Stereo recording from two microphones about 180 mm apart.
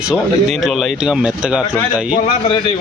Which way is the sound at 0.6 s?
Centre (ahead or behind).